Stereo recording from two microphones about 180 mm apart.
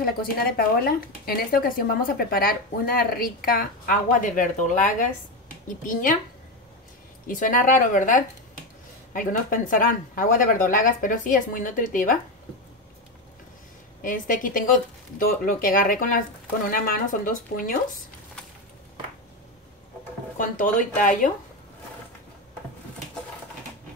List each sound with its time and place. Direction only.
0.0 s speech: 55° left (ahead or behind)
7.2 s speech: 50° left (ahead or behind)
14.0 s speech: 50° left (ahead or behind)
20.3 s speech: 45° left (ahead or behind)